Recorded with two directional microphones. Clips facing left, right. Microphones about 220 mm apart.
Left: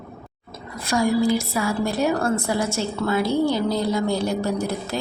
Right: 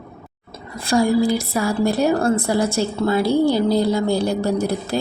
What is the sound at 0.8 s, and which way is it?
A woman's voice, 30° right (ahead or behind).